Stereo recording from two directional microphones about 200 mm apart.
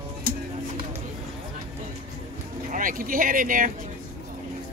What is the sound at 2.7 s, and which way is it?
Speech, 40° right (ahead or behind).